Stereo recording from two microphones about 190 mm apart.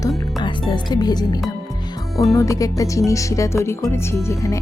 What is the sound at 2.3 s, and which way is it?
Speech, 15° left (ahead or behind).